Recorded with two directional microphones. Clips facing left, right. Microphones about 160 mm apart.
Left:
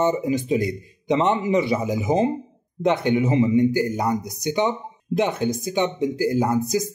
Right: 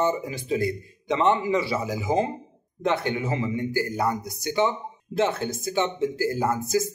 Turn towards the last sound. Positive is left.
turn(degrees=20)  # may be behind; listen again after turning